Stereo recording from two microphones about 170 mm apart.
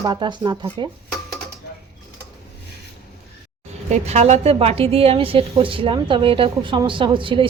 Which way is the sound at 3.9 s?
40° right (ahead or behind).